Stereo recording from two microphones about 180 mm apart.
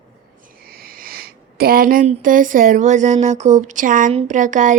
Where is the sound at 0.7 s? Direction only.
55° right (ahead or behind).